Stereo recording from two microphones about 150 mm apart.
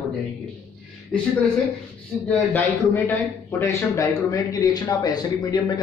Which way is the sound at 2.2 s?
10° left (ahead or behind).